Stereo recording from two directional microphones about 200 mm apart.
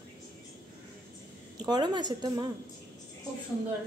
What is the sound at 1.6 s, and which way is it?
Speech, 20° right (ahead or behind).